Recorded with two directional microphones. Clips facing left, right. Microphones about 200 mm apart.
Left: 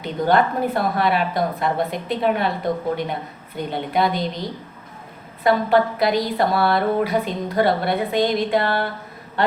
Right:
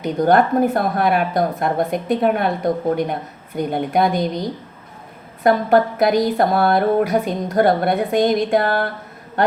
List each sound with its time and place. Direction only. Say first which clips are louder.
0.0 s speech: right 3 dB; 45° right (ahead or behind)
5.4 s speech: right 2 dB; 50° right (ahead or behind)